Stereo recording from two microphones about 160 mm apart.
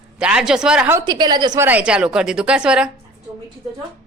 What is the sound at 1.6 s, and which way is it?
A woman's voice, 10° right (ahead or behind).